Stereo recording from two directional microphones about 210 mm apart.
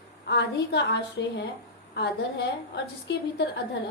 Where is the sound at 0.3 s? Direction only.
50° left (ahead or behind).